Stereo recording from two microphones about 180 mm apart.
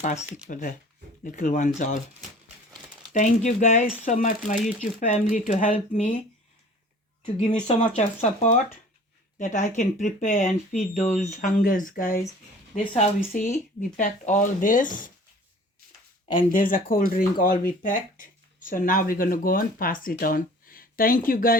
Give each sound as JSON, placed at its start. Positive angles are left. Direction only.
{"t": 0.5, "sound": "speech", "side_deg": 50}
{"t": 3.1, "sound": "speech", "side_deg": 45}
{"t": 7.3, "sound": "speech", "side_deg": 40}
{"t": 13.3, "sound": "speech", "side_deg": 45}
{"t": 16.5, "sound": "speech", "side_deg": 50}